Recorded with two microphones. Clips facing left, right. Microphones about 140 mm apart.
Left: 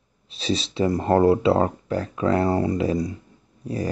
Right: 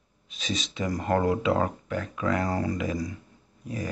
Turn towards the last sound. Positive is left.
turn(degrees=35)  # may be behind; listen again after turning